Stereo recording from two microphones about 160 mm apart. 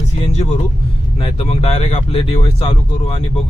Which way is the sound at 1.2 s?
40° left (ahead or behind).